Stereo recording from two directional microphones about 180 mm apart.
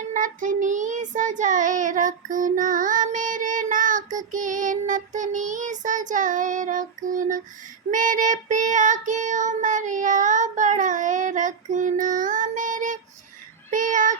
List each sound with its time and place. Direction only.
0.0 s child singing: 45° right (ahead or behind)